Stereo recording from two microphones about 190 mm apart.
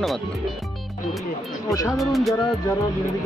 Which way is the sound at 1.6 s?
15° left (ahead or behind).